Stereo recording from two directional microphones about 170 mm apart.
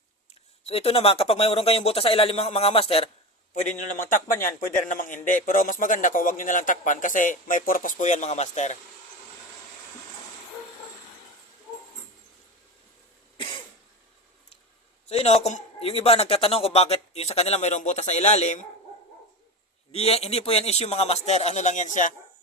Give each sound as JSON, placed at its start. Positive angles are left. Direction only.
{"t": 0.7, "sound": "a man's voice", "side_deg": 35}
{"t": 3.5, "sound": "a man's voice", "side_deg": 45}
{"t": 13.3, "sound": "cough", "side_deg": 30}
{"t": 15.1, "sound": "a man's voice", "side_deg": 40}
{"t": 19.9, "sound": "a man's voice", "side_deg": 35}